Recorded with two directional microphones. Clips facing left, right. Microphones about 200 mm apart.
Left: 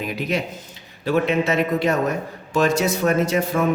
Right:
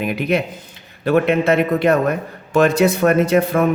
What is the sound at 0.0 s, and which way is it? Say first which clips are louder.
Speech: right 5 dB; 60° right (ahead or behind).